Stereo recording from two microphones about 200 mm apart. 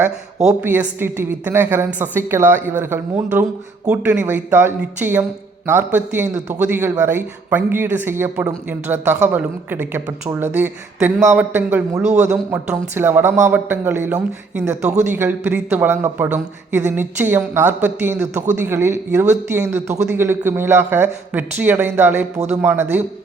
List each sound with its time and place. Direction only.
0.4 s a woman's voice: 10° right (ahead or behind)
12.0 s a man's voice: 35° right (ahead or behind)
12.3 s a woman's voice: 10° right (ahead or behind)